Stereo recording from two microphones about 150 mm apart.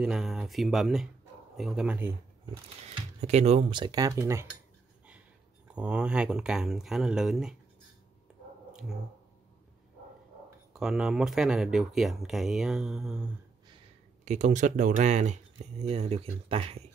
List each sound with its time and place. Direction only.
0.0 s speech: centre (ahead or behind)
2.9 s speech: 45° right (ahead or behind)
3.7 s speech: 25° right (ahead or behind)
5.7 s speech: 5° right (ahead or behind)
10.7 s speech: 5° right (ahead or behind)
14.2 s speech: 50° right (ahead or behind)